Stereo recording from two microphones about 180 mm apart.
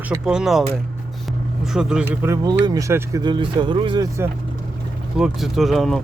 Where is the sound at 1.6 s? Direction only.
5° right (ahead or behind); by 4.1 s 25° right (ahead or behind).